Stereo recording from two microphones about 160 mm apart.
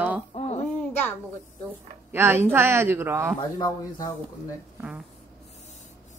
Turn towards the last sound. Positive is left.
turn(degrees=-10)  # may be behind; listen again after turning